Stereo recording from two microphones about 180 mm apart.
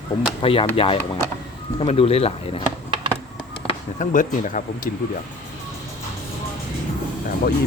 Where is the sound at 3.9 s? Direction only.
45° left (ahead or behind).